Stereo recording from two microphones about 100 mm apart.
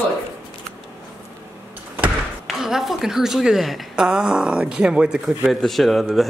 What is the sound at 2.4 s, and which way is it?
A woman's voice, 5° right (ahead or behind).